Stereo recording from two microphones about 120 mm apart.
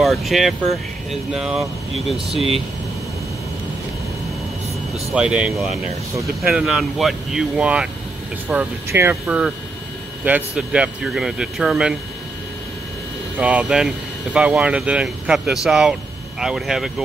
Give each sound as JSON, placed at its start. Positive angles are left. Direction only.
{"t": 0.0, "sound": "speech", "side_deg": 0}
{"t": 5.1, "sound": "speech", "side_deg": -10}
{"t": 10.2, "sound": "speech", "side_deg": -10}
{"t": 13.4, "sound": "speech", "side_deg": -10}